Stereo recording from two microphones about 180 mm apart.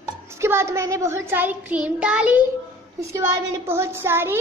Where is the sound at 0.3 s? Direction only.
15° right (ahead or behind).